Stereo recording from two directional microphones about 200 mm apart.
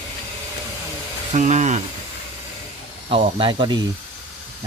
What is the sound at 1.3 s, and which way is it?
Speech, 35° right (ahead or behind).